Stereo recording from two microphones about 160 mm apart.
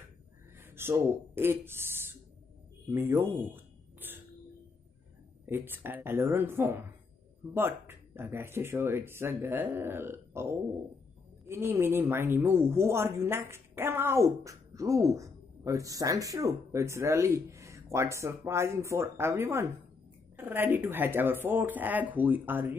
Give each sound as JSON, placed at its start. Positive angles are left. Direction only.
{"t": 0.6, "sound": "speech", "side_deg": -15}
{"t": 2.9, "sound": "a sound", "side_deg": -15}
{"t": 5.5, "sound": "speech", "side_deg": -15}